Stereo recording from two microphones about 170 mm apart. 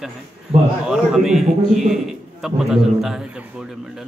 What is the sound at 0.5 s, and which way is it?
Speech, 35° right (ahead or behind).